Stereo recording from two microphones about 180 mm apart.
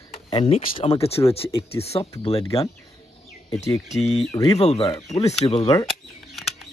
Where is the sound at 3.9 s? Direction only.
35° left (ahead or behind).